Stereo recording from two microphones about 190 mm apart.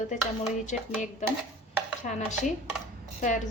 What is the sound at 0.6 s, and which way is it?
A woman's voice, 40° left (ahead or behind).